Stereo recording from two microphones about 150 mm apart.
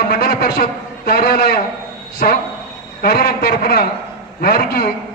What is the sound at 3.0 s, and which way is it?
A man's voice, 90° left.